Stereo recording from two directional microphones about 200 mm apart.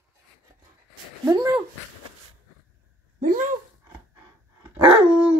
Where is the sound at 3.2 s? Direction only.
40° right (ahead or behind).